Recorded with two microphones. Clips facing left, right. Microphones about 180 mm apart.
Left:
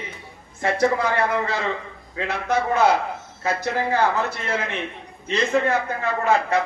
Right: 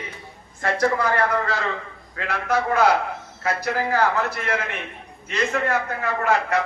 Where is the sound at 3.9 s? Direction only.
25° left (ahead or behind).